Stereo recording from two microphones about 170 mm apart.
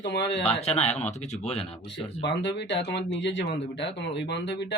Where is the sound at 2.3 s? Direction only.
90° left.